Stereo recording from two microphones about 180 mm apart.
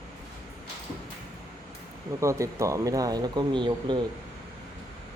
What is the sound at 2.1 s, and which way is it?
Speech, 15° right (ahead or behind).